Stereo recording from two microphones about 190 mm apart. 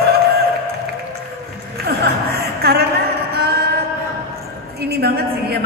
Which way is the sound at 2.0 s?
55° right (ahead or behind).